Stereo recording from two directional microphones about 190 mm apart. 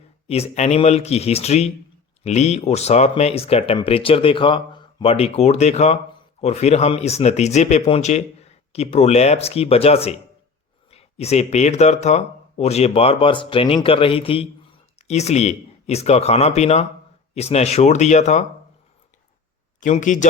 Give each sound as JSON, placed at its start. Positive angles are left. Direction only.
{"t": 0.3, "sound": "speech", "side_deg": 30}
{"t": 19.8, "sound": "speech", "side_deg": 40}